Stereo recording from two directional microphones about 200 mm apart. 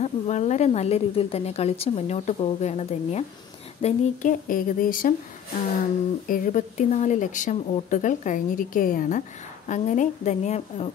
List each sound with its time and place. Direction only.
0.0 s speech: 35° left (ahead or behind)
6.2 s speech: 45° left (ahead or behind)